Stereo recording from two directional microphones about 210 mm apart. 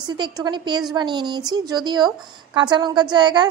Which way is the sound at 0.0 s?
20° right (ahead or behind).